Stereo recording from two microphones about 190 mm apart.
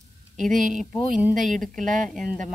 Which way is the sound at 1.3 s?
40° right (ahead or behind).